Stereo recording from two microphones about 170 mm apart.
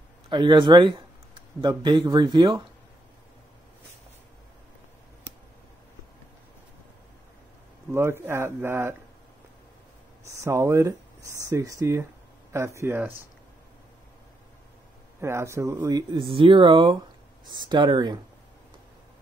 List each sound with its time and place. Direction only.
0.3 s speech: 30° right (ahead or behind)
7.9 s speech: 15° right (ahead or behind)
10.4 s speech: 15° right (ahead or behind)
15.1 s speech: 15° right (ahead or behind)